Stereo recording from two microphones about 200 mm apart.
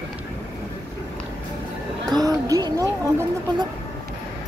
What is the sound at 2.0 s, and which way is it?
Speech, 20° right (ahead or behind).